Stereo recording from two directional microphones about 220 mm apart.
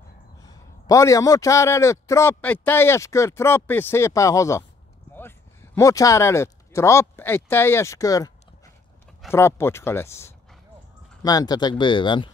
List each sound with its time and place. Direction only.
0.4 s a man's voice: 15° left (ahead or behind)
9.3 s a man's voice: 10° left (ahead or behind)